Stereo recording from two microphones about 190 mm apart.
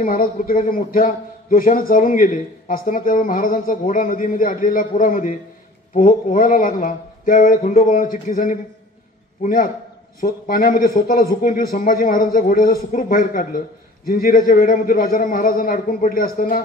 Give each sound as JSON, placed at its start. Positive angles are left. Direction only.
{"t": 0.0, "sound": "a man's voice", "side_deg": 45}